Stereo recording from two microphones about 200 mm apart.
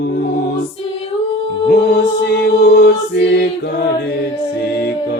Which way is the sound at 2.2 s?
55° left (ahead or behind).